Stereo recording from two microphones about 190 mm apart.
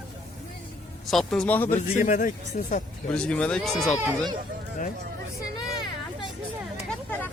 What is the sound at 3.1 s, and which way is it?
Speech, 5° left (ahead or behind).